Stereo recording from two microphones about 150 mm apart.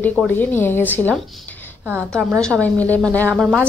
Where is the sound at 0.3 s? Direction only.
10° left (ahead or behind).